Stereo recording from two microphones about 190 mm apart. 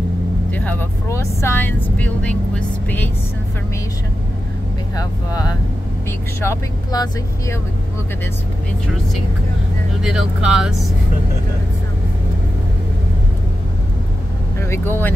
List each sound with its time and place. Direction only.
0.5 s speech: 10° left (ahead or behind)
4.9 s speech: 20° left (ahead or behind)
10.0 s speech: 5° right (ahead or behind)
14.6 s speech: 10° left (ahead or behind)